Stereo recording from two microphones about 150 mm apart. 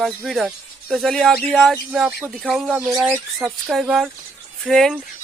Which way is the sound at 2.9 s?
15° right (ahead or behind).